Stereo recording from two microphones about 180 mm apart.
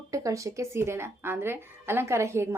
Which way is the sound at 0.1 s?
20° right (ahead or behind).